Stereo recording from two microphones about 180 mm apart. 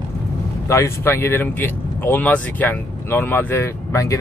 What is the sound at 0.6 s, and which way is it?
Speech, 15° left (ahead or behind).